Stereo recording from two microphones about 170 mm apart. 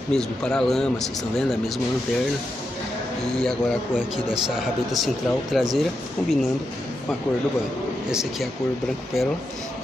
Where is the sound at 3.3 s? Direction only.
Centre (ahead or behind).